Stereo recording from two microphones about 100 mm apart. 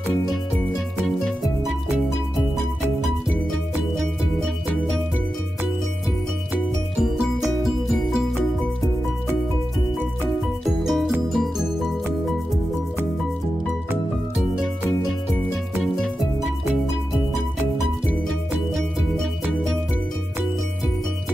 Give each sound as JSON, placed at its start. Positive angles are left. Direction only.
{"t": 0.9, "sound": "music", "side_deg": 0}
{"t": 7.0, "sound": "music", "side_deg": 0}
{"t": 10.6, "sound": "music", "side_deg": -5}